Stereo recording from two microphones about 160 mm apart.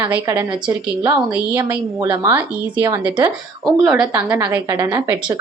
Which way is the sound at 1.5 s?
15° right (ahead or behind).